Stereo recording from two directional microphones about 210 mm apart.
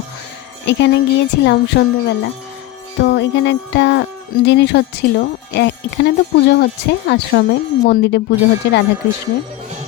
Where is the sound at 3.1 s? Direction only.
55° left (ahead or behind).